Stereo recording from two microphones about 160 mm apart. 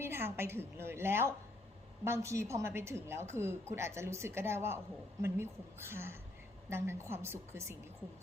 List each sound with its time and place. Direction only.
0.0 s a woman's voice: 15° right (ahead or behind)